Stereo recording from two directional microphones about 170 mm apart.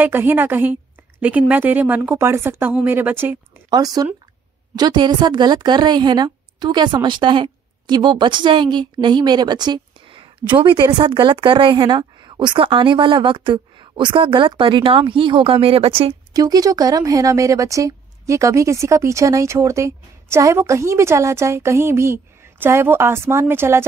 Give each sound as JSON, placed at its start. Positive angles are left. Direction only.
{"t": 0.0, "sound": "speech", "side_deg": -10}
{"t": 3.7, "sound": "a woman's voice", "side_deg": -20}
{"t": 16.3, "sound": "speech", "side_deg": -20}